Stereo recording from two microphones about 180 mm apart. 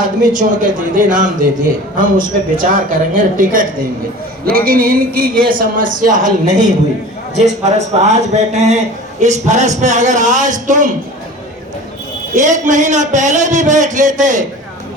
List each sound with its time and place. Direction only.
0.0 s a man's voice: 45° right (ahead or behind)
2.6 s a man's voice: 50° right (ahead or behind)
12.3 s a man's voice: 45° right (ahead or behind)